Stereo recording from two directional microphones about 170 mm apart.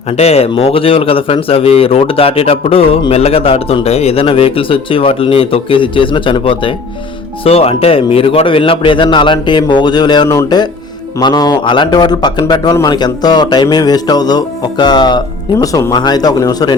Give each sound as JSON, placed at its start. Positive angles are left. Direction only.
{"t": 0.1, "sound": "a man's voice", "side_deg": 35}